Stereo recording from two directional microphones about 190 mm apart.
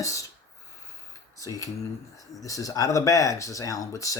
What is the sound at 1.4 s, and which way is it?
Speech, 15° left (ahead or behind).